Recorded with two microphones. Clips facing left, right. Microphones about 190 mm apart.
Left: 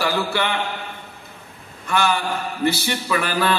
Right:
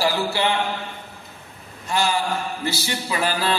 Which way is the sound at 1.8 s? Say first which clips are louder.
Left 2 dB; 60° left (ahead or behind).